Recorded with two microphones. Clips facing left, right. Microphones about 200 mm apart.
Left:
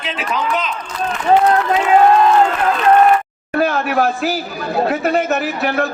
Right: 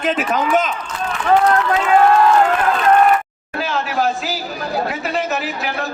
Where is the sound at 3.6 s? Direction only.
55° left (ahead or behind).